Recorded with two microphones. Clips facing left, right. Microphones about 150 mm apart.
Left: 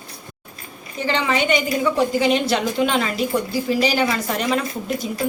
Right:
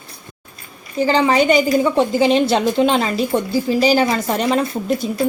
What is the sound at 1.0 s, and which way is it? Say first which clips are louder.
A woman's voice: right 6 dB; 35° right (ahead or behind).